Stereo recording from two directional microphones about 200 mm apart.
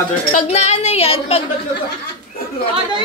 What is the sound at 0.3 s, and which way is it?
A woman's voice, 35° left (ahead or behind).